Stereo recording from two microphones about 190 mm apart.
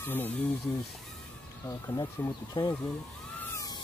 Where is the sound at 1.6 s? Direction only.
15° left (ahead or behind).